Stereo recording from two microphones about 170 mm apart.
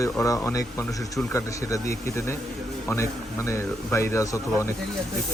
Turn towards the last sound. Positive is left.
turn(degrees=20)  # may be behind; listen again after turning